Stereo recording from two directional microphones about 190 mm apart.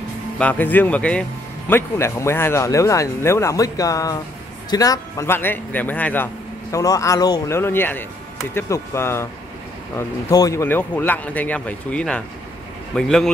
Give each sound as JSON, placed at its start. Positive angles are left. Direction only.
{"t": 0.4, "sound": "speech", "side_deg": 10}